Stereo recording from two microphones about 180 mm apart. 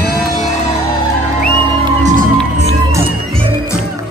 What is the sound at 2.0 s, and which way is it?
Music, 45° right (ahead or behind).